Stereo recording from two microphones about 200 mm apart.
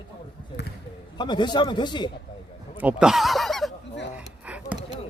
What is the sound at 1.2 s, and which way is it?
Speech, 20° left (ahead or behind).